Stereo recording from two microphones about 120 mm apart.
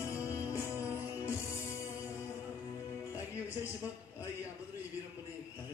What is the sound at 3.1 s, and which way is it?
Music, 25° left (ahead or behind).